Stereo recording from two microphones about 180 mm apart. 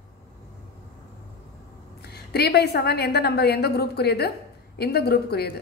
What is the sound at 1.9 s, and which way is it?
A woman's voice, 65° left (ahead or behind).